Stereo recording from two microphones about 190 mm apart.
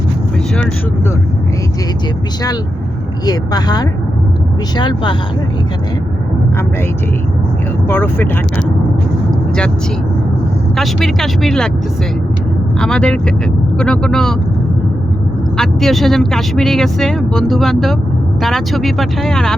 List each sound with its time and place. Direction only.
3.2 s a woman's voice: 20° left (ahead or behind)
7.9 s speech: 10° left (ahead or behind)
10.8 s speech: centre (ahead or behind)
12.8 s speech: 5° left (ahead or behind)
15.5 s speech: centre (ahead or behind)